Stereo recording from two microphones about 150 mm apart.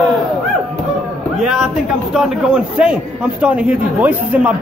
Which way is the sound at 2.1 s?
5° right (ahead or behind).